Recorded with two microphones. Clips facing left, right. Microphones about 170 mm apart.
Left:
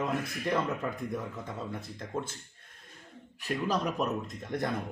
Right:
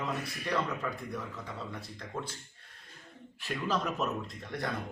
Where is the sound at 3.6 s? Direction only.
15° left (ahead or behind).